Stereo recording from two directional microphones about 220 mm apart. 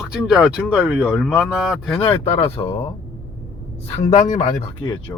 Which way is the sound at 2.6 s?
20° left (ahead or behind).